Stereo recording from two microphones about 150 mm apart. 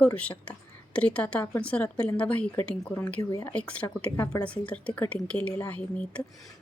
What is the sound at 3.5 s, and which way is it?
A woman's voice, 10° left (ahead or behind).